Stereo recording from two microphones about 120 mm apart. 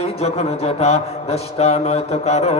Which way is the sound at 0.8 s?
60° left (ahead or behind).